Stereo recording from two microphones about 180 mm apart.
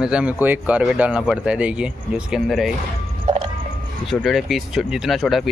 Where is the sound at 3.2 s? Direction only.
30° right (ahead or behind).